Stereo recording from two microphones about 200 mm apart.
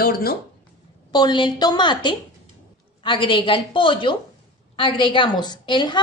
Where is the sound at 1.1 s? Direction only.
20° left (ahead or behind).